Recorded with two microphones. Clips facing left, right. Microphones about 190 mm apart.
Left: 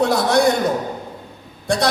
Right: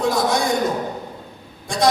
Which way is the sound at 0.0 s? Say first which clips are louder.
Left 3 dB; 65° left (ahead or behind).